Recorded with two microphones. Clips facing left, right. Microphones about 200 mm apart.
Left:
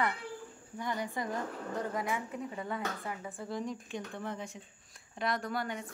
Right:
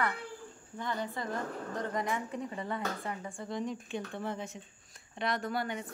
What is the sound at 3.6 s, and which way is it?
Speech, 30° right (ahead or behind).